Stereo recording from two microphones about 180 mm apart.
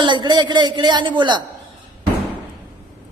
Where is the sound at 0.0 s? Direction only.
25° right (ahead or behind).